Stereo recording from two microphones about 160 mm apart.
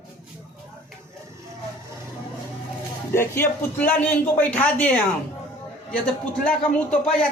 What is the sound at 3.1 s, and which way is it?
A man's voice, 15° left (ahead or behind).